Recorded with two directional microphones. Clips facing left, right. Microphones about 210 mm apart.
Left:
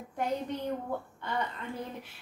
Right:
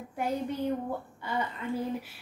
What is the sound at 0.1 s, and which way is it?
A woman's voice, 10° right (ahead or behind).